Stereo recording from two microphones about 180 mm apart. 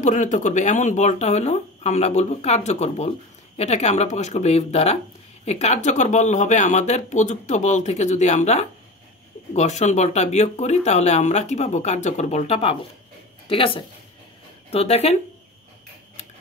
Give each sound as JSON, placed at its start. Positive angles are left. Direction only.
{"t": 0.0, "sound": "a woman's voice", "side_deg": 45}